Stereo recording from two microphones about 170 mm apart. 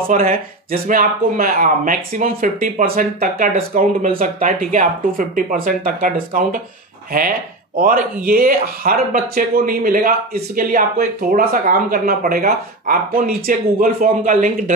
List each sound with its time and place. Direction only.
0.1 s speech: 55° right (ahead or behind)